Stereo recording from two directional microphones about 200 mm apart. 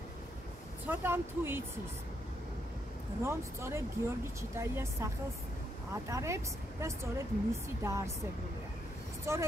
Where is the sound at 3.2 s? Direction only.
15° right (ahead or behind).